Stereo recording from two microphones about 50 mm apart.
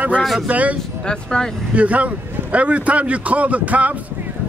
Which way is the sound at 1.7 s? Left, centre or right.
Right.